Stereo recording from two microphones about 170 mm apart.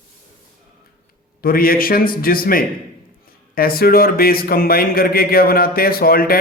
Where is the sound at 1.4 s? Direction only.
60° left (ahead or behind).